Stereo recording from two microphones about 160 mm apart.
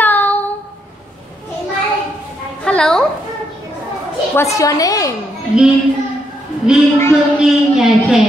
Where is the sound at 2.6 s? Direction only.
5° left (ahead or behind).